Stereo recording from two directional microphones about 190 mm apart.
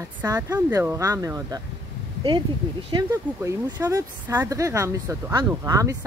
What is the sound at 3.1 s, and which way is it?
Speech, 15° right (ahead or behind).